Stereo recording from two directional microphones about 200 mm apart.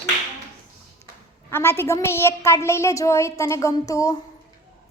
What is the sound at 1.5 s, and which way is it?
A woman's voice, 10° left (ahead or behind).